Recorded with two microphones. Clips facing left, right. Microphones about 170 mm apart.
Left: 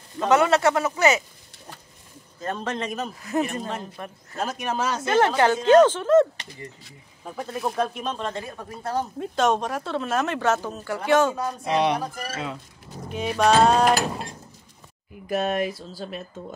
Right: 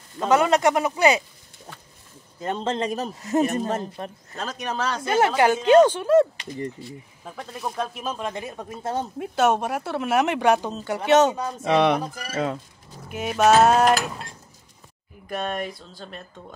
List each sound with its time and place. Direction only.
0.3 s speech: 15° right (ahead or behind)
2.4 s a man's voice: 25° right (ahead or behind)
4.4 s speech: 10° left (ahead or behind)
5.0 s speech: 10° right (ahead or behind)
7.3 s speech: centre (ahead or behind); by 9.0 s 20° right (ahead or behind)
9.2 s speech: 10° right (ahead or behind)
11.7 s speech: 55° right (ahead or behind)
13.1 s speech: 5° right (ahead or behind)
15.2 s speech: 5° left (ahead or behind)